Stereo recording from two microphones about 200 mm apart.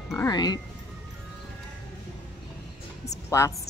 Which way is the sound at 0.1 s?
20° left (ahead or behind).